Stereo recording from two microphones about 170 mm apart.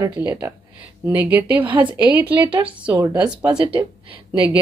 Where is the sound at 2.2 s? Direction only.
30° right (ahead or behind).